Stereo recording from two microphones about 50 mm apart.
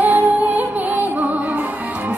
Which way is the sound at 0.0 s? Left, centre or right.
Right.